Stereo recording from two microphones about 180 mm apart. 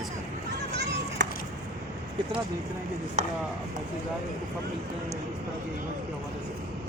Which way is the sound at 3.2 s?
40° right (ahead or behind).